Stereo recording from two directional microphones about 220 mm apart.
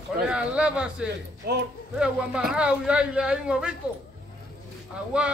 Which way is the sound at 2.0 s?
5° right (ahead or behind).